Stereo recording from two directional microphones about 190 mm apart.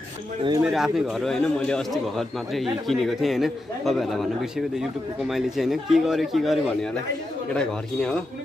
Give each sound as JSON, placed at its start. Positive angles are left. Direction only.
{"t": 0.4, "sound": "speech", "side_deg": -20}
{"t": 0.7, "sound": "a man's voice", "side_deg": 0}